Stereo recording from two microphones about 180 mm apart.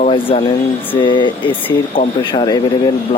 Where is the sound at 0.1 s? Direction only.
30° left (ahead or behind).